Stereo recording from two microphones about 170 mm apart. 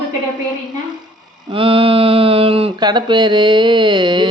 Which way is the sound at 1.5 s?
30° right (ahead or behind).